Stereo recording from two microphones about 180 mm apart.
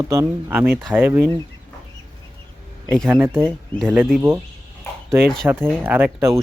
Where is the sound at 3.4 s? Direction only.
5° left (ahead or behind).